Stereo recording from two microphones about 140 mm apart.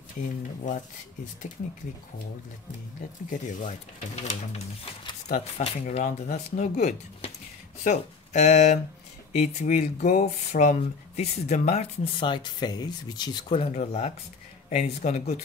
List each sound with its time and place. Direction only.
3.3 s speech: 65° left (ahead or behind)
12.2 s speech: 30° left (ahead or behind); by 15.4 s 55° left (ahead or behind)